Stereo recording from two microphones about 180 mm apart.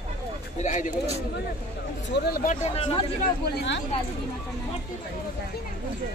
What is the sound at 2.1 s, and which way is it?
Speech, 60° left (ahead or behind).